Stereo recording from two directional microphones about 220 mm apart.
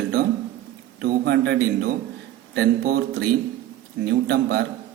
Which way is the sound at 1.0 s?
45° right (ahead or behind).